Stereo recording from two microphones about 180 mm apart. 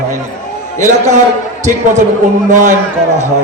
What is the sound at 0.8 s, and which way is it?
Speech, 40° right (ahead or behind).